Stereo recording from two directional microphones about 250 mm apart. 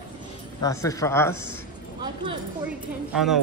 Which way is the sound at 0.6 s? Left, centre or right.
Centre.